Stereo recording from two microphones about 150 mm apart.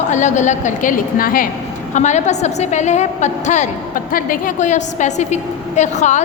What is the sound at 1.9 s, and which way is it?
A woman's voice, 50° left (ahead or behind).